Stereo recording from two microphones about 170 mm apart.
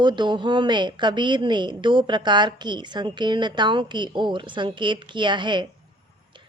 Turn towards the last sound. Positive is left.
turn(degrees=-25)  # may be behind; listen again after turning